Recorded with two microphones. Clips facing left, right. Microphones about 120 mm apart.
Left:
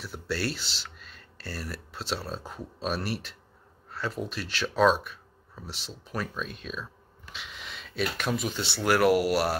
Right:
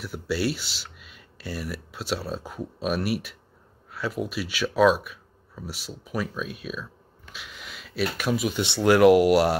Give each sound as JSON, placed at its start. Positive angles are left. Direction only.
{"t": 0.0, "sound": "speech", "side_deg": -10}
{"t": 8.5, "sound": "speech", "side_deg": -20}